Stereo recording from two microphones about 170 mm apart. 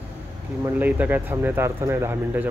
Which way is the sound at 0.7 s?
10° right (ahead or behind).